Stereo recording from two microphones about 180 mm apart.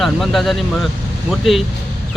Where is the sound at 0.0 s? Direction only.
Centre (ahead or behind).